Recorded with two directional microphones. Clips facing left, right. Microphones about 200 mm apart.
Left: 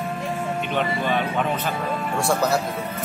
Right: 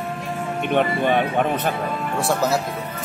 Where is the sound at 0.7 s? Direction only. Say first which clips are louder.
Right 6 dB; 55° right (ahead or behind).